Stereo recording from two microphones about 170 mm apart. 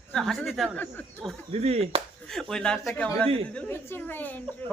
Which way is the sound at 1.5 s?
40° right (ahead or behind).